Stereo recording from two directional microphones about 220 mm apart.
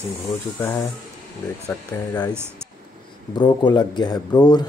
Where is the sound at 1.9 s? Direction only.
15° left (ahead or behind).